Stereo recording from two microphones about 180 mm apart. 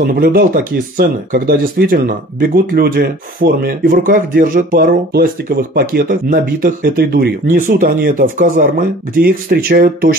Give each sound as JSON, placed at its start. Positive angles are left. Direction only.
{"t": 0.0, "sound": "speech", "side_deg": -55}